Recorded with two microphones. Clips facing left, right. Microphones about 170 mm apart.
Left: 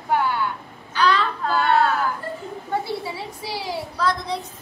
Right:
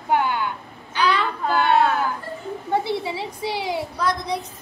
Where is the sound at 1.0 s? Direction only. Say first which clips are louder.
Left 1 dB; 15° right (ahead or behind).